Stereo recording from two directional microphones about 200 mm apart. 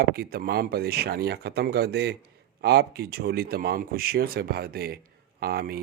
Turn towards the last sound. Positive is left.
turn(degrees=-50)  # may be behind; listen again after turning